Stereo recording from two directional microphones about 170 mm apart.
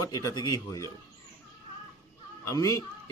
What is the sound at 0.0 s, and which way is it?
Speech, 20° left (ahead or behind).